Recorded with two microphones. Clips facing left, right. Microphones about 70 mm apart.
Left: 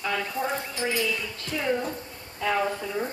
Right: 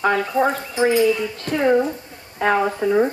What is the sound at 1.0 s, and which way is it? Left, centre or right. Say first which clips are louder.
Speech: right 11 dB; right.